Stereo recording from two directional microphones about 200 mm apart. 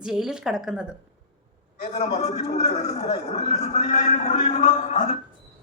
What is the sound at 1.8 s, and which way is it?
A man's voice, 35° left (ahead or behind).